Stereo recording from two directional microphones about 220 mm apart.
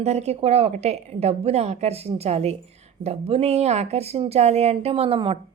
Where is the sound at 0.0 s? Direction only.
30° right (ahead or behind).